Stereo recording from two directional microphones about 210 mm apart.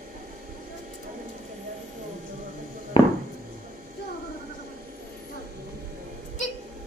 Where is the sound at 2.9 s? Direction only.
25° left (ahead or behind).